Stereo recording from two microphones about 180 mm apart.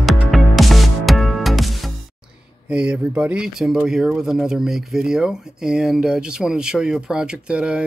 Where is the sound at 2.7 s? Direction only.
5° right (ahead or behind).